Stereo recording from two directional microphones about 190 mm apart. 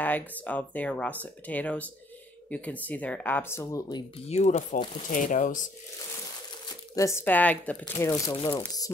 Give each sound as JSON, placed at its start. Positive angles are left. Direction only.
{"t": 0.0, "sound": "speech", "side_deg": 10}
{"t": 4.3, "sound": "speech", "side_deg": 40}
{"t": 7.0, "sound": "speech", "side_deg": 15}
{"t": 8.3, "sound": "speech", "side_deg": 25}